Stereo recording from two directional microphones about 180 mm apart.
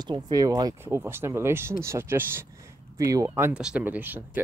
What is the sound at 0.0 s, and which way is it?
Speech, 20° right (ahead or behind).